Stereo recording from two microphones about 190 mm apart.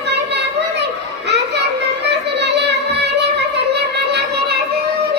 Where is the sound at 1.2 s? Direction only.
65° right (ahead or behind).